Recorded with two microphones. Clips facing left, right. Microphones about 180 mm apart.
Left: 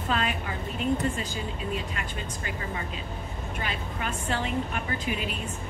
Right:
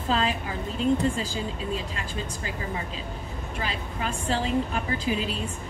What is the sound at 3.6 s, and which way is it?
A woman's voice, 30° right (ahead or behind).